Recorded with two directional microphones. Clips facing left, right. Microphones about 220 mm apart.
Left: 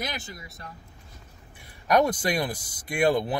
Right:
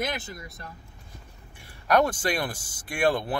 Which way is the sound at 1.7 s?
20° left (ahead or behind).